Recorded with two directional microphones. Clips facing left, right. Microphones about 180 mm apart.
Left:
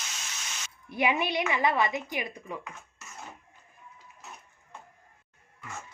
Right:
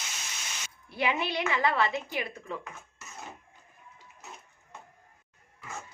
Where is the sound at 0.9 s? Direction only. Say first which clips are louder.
Left 2 dB; 15° left (ahead or behind).